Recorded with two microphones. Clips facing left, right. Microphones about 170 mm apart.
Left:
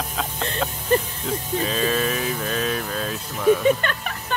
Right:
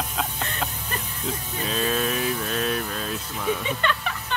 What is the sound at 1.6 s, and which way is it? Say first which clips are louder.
Speech: left 2 dB; centre (ahead or behind).